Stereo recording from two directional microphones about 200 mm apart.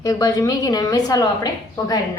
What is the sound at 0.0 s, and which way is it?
A woman's voice, 20° left (ahead or behind).